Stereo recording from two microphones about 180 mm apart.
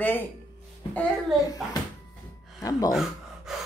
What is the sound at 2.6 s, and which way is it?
Speech, 20° left (ahead or behind).